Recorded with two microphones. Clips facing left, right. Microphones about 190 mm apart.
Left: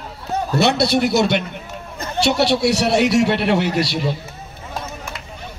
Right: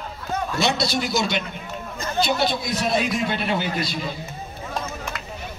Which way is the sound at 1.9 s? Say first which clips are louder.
Left 5 dB; 75° left (ahead or behind).